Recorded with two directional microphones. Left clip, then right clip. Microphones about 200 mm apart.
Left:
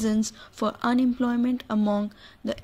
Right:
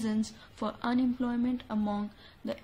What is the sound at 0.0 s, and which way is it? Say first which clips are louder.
Speech: left 7 dB; 35° left (ahead or behind).